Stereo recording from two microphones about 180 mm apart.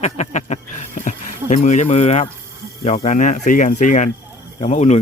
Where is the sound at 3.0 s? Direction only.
40° left (ahead or behind).